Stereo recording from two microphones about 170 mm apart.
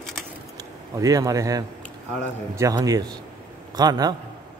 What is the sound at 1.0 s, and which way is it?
Speech, 20° right (ahead or behind).